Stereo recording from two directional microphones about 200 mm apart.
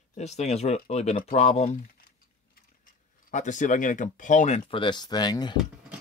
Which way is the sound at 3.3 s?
40° left (ahead or behind).